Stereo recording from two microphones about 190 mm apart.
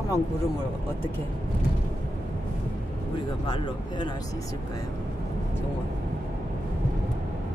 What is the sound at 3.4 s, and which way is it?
Speech, 25° left (ahead or behind).